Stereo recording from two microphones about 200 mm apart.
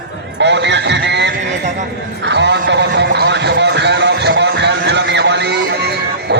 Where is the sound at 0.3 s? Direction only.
60° right (ahead or behind).